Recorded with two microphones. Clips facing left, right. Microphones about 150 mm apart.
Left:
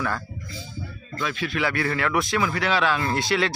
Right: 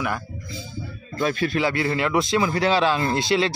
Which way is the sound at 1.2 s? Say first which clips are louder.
Right 6 dB; 40° right (ahead or behind).